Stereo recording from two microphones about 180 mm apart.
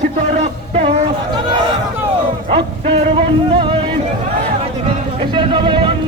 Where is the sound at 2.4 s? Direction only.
30° right (ahead or behind).